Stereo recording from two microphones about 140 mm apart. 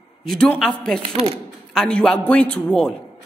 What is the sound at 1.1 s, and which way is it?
Speech, 45° right (ahead or behind).